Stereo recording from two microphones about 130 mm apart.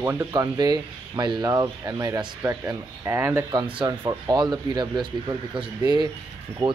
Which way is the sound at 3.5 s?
35° right (ahead or behind).